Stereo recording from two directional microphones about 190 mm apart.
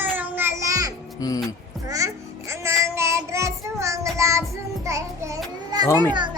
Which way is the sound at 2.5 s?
15° right (ahead or behind).